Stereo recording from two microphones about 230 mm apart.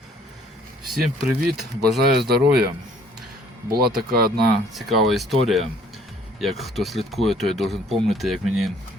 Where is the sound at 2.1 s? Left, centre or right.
Right.